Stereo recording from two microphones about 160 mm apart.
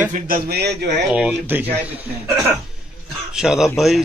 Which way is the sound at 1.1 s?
10° right (ahead or behind).